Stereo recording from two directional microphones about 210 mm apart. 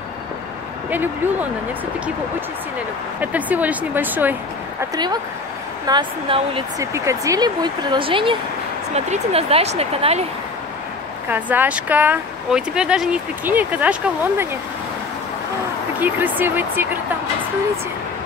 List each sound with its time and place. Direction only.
0.8 s speech: 10° right (ahead or behind)
3.2 s speech: 10° right (ahead or behind); by 6.6 s 25° right (ahead or behind)
6.8 s speech: 15° right (ahead or behind); by 10.2 s 30° right (ahead or behind)
11.2 s speech: 10° right (ahead or behind)
16.0 s speech: 10° right (ahead or behind)